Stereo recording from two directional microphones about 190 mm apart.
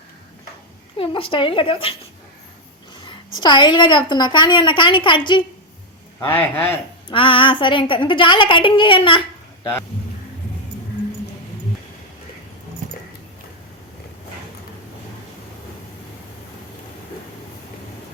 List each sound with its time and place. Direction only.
0.9 s a woman's voice: 25° left (ahead or behind)
3.4 s a woman's voice: 25° left (ahead or behind)
6.1 s speech: 10° left (ahead or behind)
7.1 s a woman's voice: 25° left (ahead or behind)